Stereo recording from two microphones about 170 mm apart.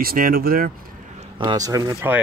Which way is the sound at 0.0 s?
60° right (ahead or behind).